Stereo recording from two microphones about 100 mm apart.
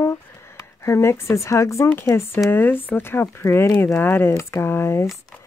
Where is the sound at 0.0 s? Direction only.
30° left (ahead or behind).